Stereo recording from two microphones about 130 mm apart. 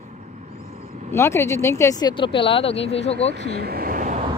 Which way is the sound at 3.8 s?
90° right.